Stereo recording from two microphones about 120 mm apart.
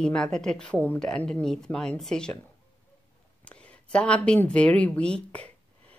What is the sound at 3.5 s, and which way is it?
A woman's voice, 10° left (ahead or behind).